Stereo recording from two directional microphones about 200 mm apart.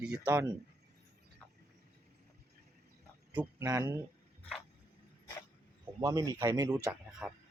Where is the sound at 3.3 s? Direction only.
10° right (ahead or behind).